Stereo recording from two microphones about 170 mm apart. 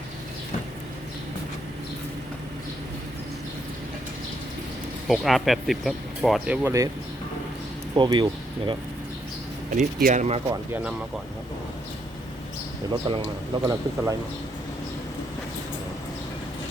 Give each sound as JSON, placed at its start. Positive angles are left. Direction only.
{"t": 5.0, "sound": "speech", "side_deg": 0}
{"t": 7.9, "sound": "speech", "side_deg": -25}
{"t": 9.7, "sound": "speech", "side_deg": -50}
{"t": 12.9, "sound": "speech", "side_deg": -30}
{"t": 13.7, "sound": "a man's voice", "side_deg": -20}